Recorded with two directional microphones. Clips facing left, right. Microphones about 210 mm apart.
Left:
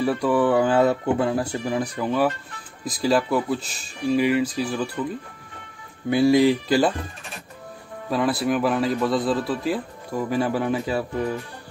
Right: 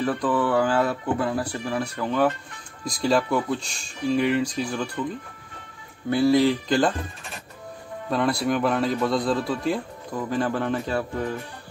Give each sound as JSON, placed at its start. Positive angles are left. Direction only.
{"t": 0.0, "sound": "a man's voice", "side_deg": 10}
{"t": 6.0, "sound": "speech", "side_deg": 15}
{"t": 8.1, "sound": "a man's voice", "side_deg": 0}